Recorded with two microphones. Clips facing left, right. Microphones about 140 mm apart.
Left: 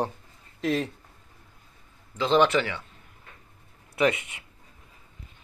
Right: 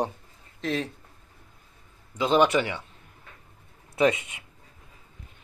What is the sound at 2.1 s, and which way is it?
Speech, 10° right (ahead or behind).